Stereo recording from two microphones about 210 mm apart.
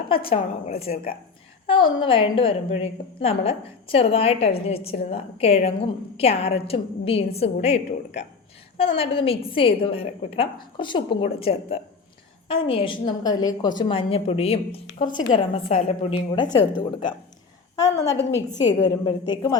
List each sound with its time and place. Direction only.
0.1 s a woman's voice: 25° left (ahead or behind)
2.0 s a woman's voice: 25° left (ahead or behind)
17.7 s a sound: 15° left (ahead or behind)
18.9 s a woman's voice: 20° left (ahead or behind)